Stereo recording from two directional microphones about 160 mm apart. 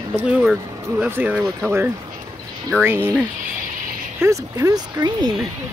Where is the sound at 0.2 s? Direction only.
5° right (ahead or behind).